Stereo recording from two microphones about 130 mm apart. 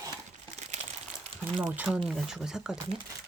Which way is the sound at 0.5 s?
65° right (ahead or behind).